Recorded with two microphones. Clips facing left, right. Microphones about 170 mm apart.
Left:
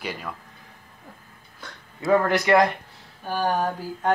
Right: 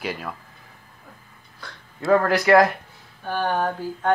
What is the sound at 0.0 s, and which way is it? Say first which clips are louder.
Speech: right 3 dB; 10° right (ahead or behind).